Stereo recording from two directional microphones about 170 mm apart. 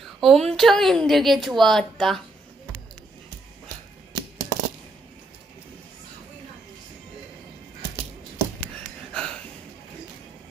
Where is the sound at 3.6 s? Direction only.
25° right (ahead or behind).